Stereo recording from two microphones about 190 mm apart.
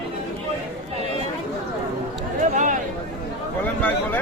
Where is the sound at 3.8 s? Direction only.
10° left (ahead or behind).